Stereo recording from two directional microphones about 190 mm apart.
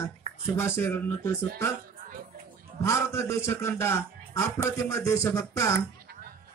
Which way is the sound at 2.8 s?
15° left (ahead or behind).